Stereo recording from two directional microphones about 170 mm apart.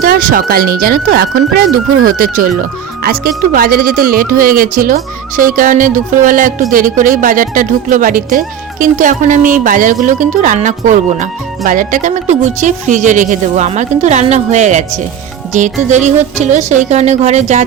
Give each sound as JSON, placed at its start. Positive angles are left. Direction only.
{"t": 0.0, "sound": "speech", "side_deg": -55}